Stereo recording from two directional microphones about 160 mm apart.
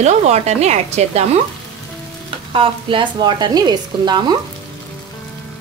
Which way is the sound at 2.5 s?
35° right (ahead or behind).